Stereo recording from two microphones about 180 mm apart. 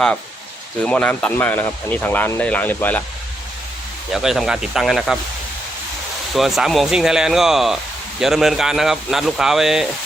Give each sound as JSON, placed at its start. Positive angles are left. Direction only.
{"t": 0.9, "sound": "speech", "side_deg": 5}
{"t": 4.1, "sound": "speech", "side_deg": 0}
{"t": 6.3, "sound": "speech", "side_deg": 0}